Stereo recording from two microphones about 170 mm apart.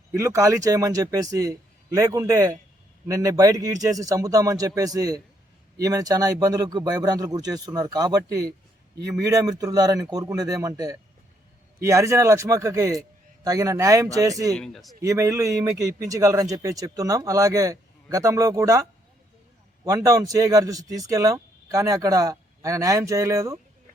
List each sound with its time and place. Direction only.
0.1 s a man's voice: 15° right (ahead or behind)
14.5 s a man's voice: centre (ahead or behind)
15.0 s a man's voice: 20° right (ahead or behind)